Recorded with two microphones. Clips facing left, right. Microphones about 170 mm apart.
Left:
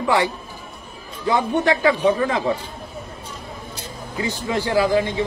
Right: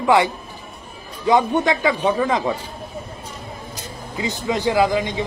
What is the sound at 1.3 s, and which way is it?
Speech, 20° right (ahead or behind).